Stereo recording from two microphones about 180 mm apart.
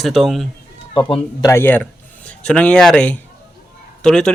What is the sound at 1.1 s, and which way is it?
Speech, 15° left (ahead or behind).